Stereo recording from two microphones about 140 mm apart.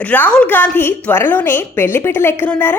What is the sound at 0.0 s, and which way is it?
A woman's voice, 10° left (ahead or behind).